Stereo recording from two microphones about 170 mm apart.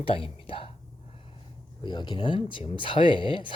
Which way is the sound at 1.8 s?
25° left (ahead or behind).